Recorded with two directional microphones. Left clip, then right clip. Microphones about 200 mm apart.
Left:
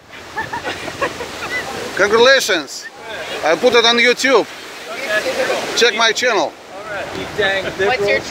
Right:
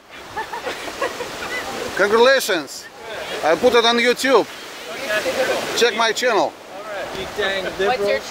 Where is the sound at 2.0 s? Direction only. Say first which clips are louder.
Left 3 dB; 5° right (ahead or behind).